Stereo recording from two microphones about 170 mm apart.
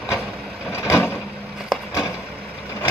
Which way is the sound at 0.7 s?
15° left (ahead or behind).